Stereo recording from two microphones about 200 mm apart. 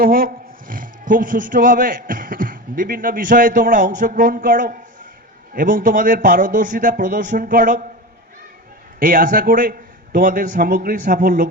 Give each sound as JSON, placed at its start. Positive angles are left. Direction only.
{"t": 0.0, "sound": "a man's voice", "side_deg": -45}
{"t": 9.0, "sound": "a man's voice", "side_deg": -45}